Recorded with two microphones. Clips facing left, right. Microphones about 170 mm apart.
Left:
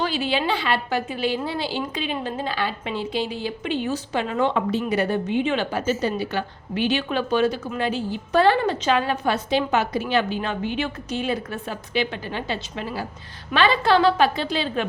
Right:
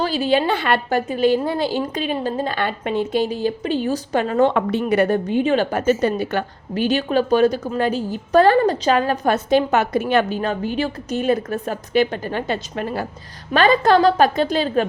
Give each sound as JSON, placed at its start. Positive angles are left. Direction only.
{"t": 0.0, "sound": "a woman's voice", "side_deg": -40}
{"t": 4.5, "sound": "a woman's voice", "side_deg": -60}
{"t": 5.8, "sound": "a woman's voice", "side_deg": -55}